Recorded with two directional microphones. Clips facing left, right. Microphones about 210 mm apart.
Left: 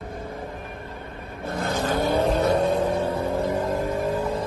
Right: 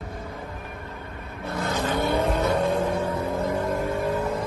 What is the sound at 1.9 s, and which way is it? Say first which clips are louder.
Vehicle: left 3 dB; 30° left (ahead or behind).